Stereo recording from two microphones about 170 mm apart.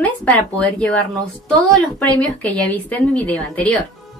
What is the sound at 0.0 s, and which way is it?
A woman's voice, 10° left (ahead or behind).